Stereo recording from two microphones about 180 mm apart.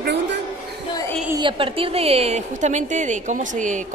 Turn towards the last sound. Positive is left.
turn(degrees=-45)  # may be behind; listen again after turning